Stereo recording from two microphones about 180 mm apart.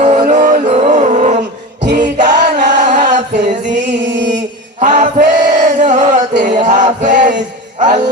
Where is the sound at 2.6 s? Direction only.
45° right (ahead or behind).